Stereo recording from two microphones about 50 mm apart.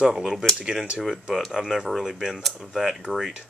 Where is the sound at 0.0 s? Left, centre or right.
Centre.